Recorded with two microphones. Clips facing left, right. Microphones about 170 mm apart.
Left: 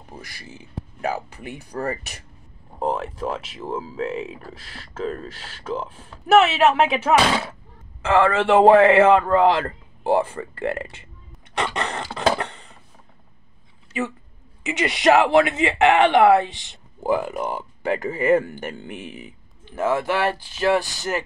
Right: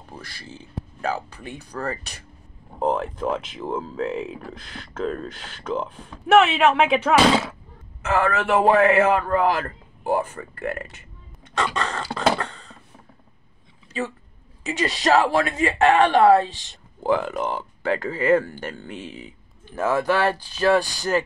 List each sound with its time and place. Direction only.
0.2 s a man's voice: 15° left (ahead or behind)
2.8 s speech: centre (ahead or behind)
8.0 s a man's voice: 25° left (ahead or behind)
11.5 s a sound: 20° left (ahead or behind)
15.0 s a man's voice: 20° left (ahead or behind)